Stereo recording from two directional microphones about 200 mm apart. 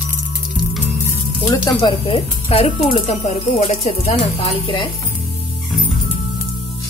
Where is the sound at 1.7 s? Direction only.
30° left (ahead or behind).